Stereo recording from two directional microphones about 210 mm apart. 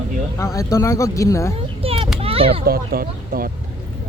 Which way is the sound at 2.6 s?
45° right (ahead or behind).